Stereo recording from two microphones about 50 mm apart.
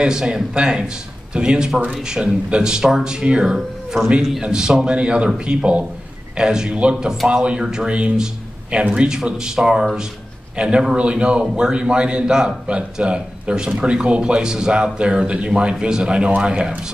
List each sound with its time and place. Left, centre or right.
0.0 s a man's voice: centre